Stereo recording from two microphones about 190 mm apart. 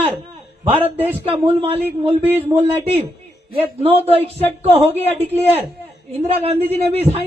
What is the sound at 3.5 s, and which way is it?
A man's voice, 30° right (ahead or behind).